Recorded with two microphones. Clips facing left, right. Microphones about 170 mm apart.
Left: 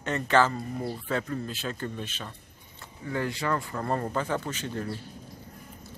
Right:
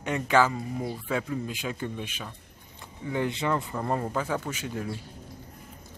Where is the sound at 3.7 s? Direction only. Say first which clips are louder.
Even; 10° right (ahead or behind).